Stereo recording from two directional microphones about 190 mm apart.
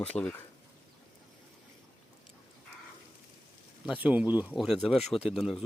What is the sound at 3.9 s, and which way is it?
Speech, 10° right (ahead or behind).